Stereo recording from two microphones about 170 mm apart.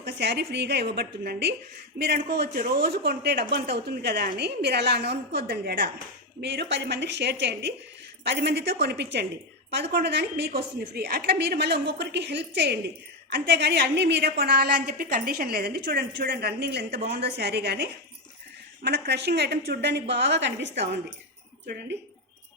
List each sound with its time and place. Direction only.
0.0 s a woman's voice: 75° right (ahead or behind)
6.4 s a woman's voice: 90° right